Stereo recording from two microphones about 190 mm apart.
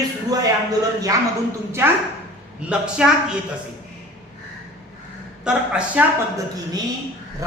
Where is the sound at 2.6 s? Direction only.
5° right (ahead or behind).